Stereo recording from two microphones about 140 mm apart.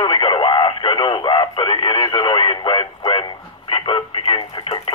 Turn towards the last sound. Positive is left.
turn(degrees=40)  # may be behind; listen again after turning